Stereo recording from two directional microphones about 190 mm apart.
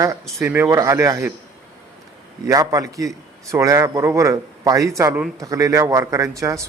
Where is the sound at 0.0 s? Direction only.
15° right (ahead or behind).